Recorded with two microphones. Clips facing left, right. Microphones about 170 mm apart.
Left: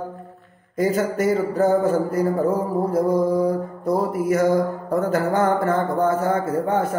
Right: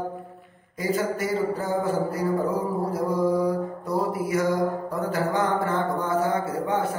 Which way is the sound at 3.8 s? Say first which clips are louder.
Left 7 dB; 45° left (ahead or behind).